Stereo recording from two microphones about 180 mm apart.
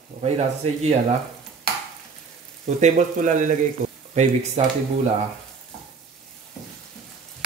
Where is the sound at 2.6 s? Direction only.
40° right (ahead or behind).